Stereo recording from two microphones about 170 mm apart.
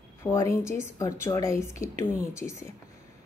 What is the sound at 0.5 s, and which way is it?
Speech, 15° left (ahead or behind).